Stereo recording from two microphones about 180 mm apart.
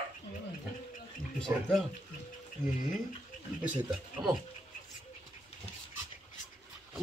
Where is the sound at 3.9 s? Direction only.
Centre (ahead or behind).